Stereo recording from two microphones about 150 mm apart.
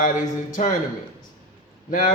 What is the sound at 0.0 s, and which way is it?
Speech, 60° left (ahead or behind).